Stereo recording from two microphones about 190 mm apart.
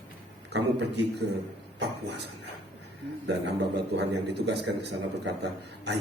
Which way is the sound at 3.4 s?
65° right (ahead or behind).